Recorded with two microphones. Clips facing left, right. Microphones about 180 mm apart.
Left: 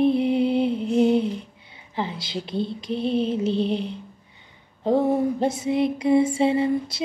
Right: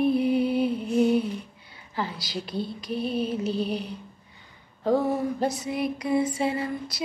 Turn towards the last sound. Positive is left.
turn(degrees=25)  # may be behind; listen again after turning